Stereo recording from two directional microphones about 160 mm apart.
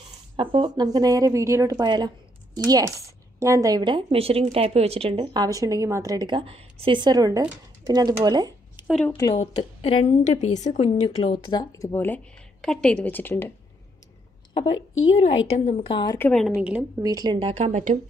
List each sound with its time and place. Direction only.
0.4 s a woman's voice: 30° right (ahead or behind)
8.8 s a sound: 15° right (ahead or behind)
9.3 s a woman's voice: 35° left (ahead or behind)
11.3 s a woman's voice: 25° left (ahead or behind)
14.5 s a woman's voice: 30° left (ahead or behind)
16.2 s a woman's voice: 5° left (ahead or behind)
16.5 s a woman's voice: 5° right (ahead or behind)
17.0 s a woman's voice: 25° right (ahead or behind)
17.4 s speech: 40° right (ahead or behind)